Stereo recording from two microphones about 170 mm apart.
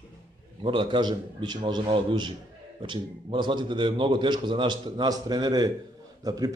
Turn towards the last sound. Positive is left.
turn(degrees=-20)  # may be behind; listen again after turning